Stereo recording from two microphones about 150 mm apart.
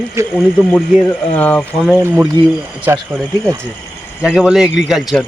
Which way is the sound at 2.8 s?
15° right (ahead or behind).